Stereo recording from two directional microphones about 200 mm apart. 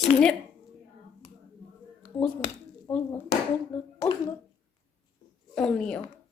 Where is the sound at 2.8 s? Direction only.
10° left (ahead or behind).